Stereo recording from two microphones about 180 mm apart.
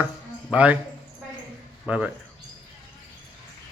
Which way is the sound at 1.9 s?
5° right (ahead or behind).